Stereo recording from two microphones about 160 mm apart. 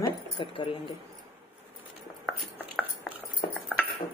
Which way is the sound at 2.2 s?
5° left (ahead or behind).